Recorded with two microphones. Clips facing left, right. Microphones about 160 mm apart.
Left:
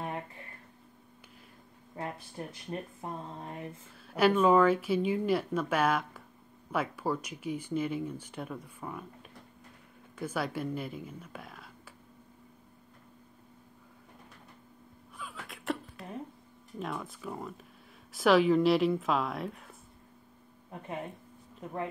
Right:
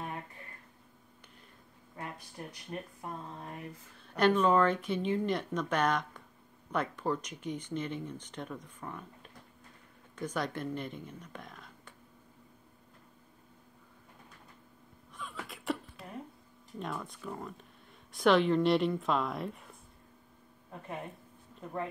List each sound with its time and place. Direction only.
2.0 s speech: 25° left (ahead or behind)
4.1 s speech: 5° left (ahead or behind)
15.1 s a sound: centre (ahead or behind)
16.7 s speech: centre (ahead or behind)